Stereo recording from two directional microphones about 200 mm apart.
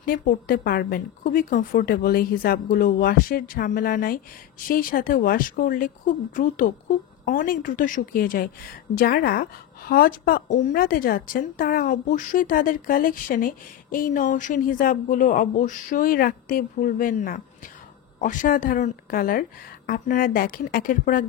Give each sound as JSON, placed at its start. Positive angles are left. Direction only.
{"t": 0.0, "sound": "a woman's voice", "side_deg": 45}